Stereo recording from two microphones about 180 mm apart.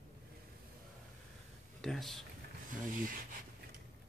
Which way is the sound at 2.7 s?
50° right (ahead or behind).